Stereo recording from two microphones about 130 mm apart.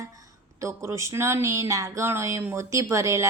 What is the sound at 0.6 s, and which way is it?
Speech, 20° right (ahead or behind).